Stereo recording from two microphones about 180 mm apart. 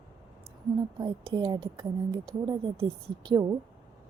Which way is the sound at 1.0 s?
25° right (ahead or behind).